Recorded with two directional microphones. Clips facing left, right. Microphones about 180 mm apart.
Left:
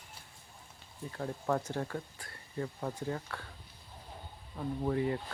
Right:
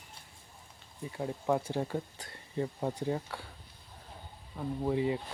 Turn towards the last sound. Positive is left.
turn(degrees=-15)  # may be behind; listen again after turning